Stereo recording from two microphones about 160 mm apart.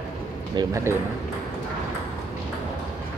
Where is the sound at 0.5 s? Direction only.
20° right (ahead or behind).